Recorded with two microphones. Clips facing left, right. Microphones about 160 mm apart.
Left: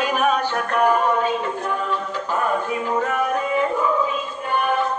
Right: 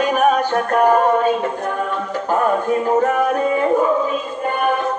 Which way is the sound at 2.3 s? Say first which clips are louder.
Right 6 dB; 45° right (ahead or behind).